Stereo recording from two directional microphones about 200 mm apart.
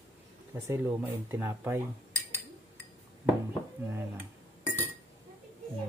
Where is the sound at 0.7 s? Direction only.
10° right (ahead or behind).